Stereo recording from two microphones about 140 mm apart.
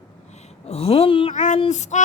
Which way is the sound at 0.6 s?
45° left (ahead or behind).